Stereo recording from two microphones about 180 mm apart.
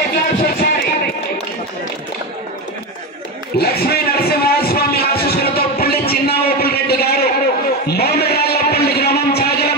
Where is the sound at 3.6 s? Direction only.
60° left (ahead or behind).